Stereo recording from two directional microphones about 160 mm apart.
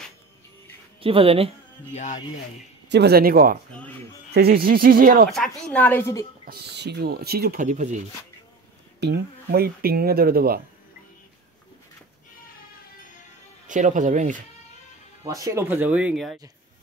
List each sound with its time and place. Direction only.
1.0 s speech: 35° right (ahead or behind)
2.9 s speech: 85° right; by 3.5 s 70° right (ahead or behind)
4.3 s speech: 80° right
5.3 s a woman's voice: 5° left (ahead or behind)
6.4 s speech: 80° right; by 8.0 s 50° right (ahead or behind)
9.0 s speech: 85° right; by 10.6 s 70° right (ahead or behind)
13.7 s speech: 50° right (ahead or behind)
15.2 s speech: 20° right (ahead or behind); by 16.3 s 5° right (ahead or behind)